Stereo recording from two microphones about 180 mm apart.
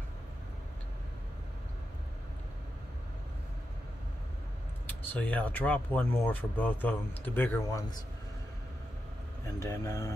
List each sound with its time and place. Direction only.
4.8 s speech: 10° left (ahead or behind)
9.6 s speech: 15° left (ahead or behind)